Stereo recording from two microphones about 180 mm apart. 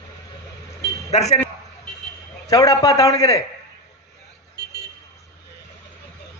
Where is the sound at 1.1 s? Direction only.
40° left (ahead or behind).